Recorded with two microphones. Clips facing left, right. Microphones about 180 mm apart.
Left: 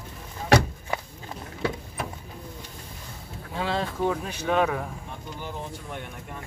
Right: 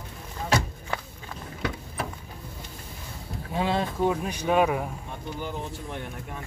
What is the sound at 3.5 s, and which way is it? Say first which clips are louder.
Speech: right 2 dB; 15° right (ahead or behind).